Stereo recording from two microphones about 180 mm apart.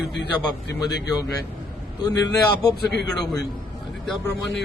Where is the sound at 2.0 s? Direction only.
20° left (ahead or behind).